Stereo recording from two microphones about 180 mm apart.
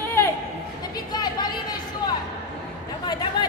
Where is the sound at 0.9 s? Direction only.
20° left (ahead or behind).